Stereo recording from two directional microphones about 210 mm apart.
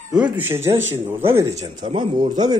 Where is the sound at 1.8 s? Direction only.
25° right (ahead or behind).